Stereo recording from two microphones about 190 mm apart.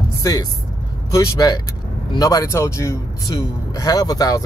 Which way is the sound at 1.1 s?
20° left (ahead or behind).